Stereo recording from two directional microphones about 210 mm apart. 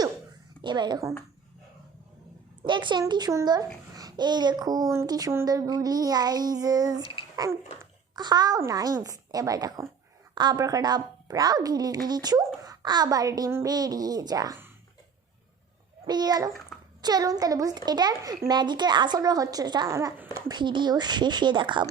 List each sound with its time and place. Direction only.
0.6 s a child's voice: 20° right (ahead or behind)
2.6 s a child's voice: 20° right (ahead or behind)
16.0 s a child's voice: 20° right (ahead or behind)